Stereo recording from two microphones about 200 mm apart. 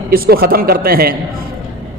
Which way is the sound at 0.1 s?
50° right (ahead or behind).